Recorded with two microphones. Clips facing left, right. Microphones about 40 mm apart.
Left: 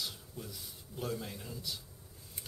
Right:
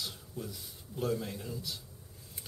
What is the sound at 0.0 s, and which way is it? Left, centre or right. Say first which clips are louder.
A man's voice: right 2 dB; centre.